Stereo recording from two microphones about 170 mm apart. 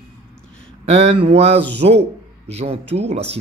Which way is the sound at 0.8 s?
35° right (ahead or behind).